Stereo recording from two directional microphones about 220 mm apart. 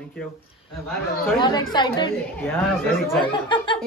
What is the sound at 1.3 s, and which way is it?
Speech, 20° left (ahead or behind).